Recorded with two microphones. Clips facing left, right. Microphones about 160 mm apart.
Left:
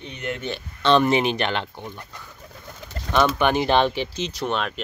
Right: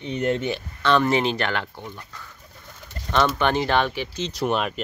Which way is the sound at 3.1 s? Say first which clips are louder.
Left 1 dB; 15° left (ahead or behind).